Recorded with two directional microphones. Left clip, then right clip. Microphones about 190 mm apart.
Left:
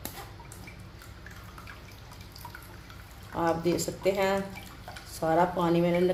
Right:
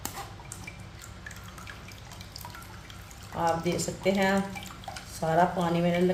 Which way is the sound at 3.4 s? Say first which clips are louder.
Even; 40° left (ahead or behind).